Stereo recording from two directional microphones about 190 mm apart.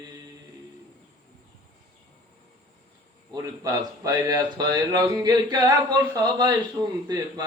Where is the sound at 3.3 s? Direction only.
20° right (ahead or behind).